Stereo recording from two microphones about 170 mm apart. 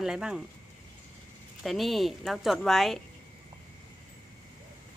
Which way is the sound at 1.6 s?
Centre (ahead or behind).